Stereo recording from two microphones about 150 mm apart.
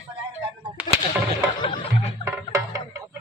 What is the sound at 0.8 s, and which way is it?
Whip, 10° right (ahead or behind).